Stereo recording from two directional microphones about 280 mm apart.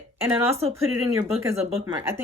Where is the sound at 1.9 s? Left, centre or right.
Centre.